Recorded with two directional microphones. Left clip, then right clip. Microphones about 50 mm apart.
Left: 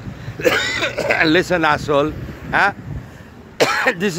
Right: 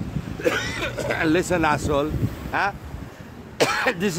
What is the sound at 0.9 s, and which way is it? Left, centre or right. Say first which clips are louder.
Speech: left 6 dB; left.